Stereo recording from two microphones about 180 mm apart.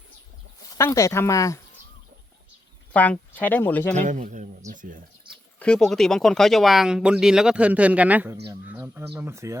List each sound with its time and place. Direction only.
0.7 s speech: 15° left (ahead or behind)
2.9 s speech: 10° left (ahead or behind)
3.9 s a man's voice: 45° right (ahead or behind)
5.5 s speech: 5° left (ahead or behind); by 9.6 s 15° right (ahead or behind)